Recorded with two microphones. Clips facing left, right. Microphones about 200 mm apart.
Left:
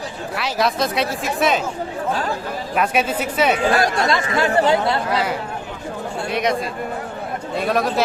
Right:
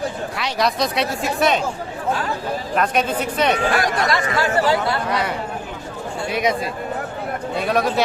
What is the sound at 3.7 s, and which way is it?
Speech, 25° left (ahead or behind).